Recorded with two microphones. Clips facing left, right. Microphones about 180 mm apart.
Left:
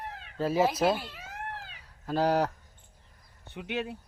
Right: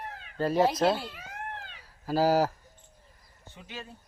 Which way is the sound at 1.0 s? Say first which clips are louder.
Right 1 dB; centre (ahead or behind).